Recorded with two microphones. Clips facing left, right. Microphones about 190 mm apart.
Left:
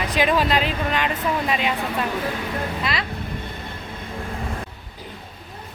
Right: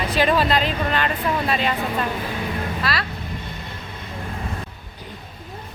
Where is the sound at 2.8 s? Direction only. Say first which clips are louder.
Right 1 dB; 20° left (ahead or behind).